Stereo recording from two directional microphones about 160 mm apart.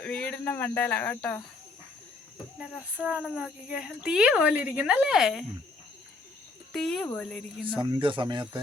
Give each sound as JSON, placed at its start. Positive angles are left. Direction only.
{"t": 0.0, "sound": "speech", "side_deg": 5}
{"t": 2.6, "sound": "speech", "side_deg": -5}
{"t": 6.7, "sound": "speech", "side_deg": 5}
{"t": 7.8, "sound": "speech", "side_deg": -30}